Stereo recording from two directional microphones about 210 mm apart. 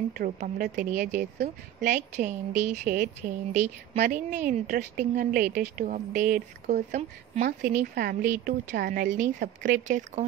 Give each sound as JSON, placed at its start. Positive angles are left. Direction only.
{"t": 0.2, "sound": "a woman's voice", "side_deg": -35}